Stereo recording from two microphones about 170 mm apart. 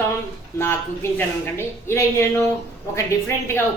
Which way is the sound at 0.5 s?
15° left (ahead or behind).